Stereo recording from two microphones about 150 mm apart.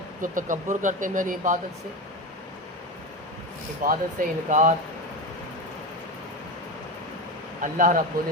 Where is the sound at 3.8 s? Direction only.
65° right (ahead or behind).